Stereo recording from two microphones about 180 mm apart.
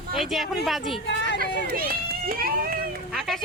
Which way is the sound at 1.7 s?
55° right (ahead or behind).